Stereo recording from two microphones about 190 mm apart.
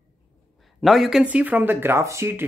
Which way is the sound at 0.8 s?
Centre (ahead or behind).